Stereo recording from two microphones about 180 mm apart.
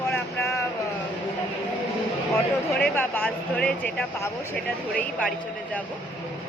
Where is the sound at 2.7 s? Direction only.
10° left (ahead or behind).